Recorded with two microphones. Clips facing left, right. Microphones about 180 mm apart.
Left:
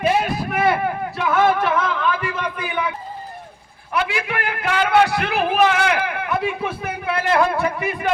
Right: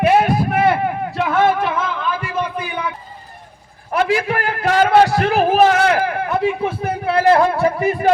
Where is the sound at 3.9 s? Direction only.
40° right (ahead or behind).